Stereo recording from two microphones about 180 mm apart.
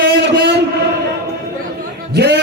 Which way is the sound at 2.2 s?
65° right (ahead or behind).